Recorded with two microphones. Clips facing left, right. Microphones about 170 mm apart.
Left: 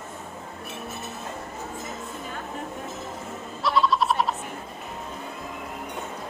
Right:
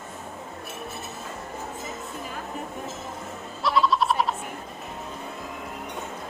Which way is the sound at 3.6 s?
Centre (ahead or behind).